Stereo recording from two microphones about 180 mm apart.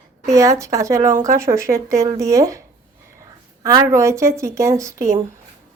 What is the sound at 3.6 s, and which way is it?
Speech, 20° right (ahead or behind).